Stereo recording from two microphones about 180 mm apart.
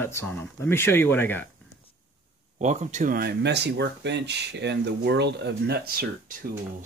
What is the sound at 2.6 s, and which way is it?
Speech, 40° right (ahead or behind).